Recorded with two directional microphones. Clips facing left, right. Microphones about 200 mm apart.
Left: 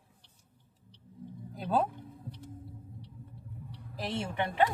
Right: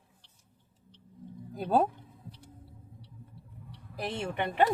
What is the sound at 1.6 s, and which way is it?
Speech, 45° right (ahead or behind).